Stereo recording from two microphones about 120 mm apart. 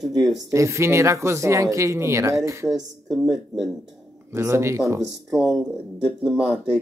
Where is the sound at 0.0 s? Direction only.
Centre (ahead or behind).